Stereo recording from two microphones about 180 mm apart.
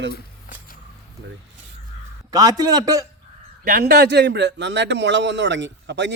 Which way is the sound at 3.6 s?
60° right (ahead or behind).